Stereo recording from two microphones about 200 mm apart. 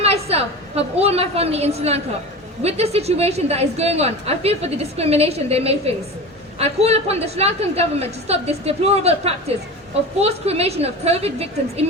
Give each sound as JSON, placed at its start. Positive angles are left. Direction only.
{"t": 0.0, "sound": "a woman's voice", "side_deg": -30}